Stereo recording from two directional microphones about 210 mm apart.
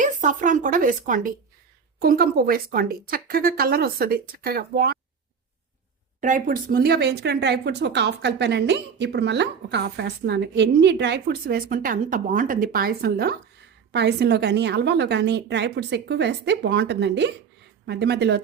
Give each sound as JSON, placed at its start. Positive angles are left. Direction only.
{"t": 0.0, "sound": "speech", "side_deg": -35}
{"t": 6.1, "sound": "a woman's voice", "side_deg": -40}